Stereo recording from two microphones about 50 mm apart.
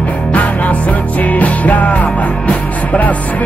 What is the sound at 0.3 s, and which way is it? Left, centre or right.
Music, left.